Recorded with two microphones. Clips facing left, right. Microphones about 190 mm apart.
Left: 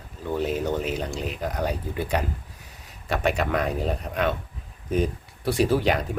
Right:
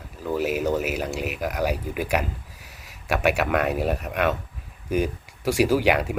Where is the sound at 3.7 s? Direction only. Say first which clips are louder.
Right 3 dB; 75° right (ahead or behind).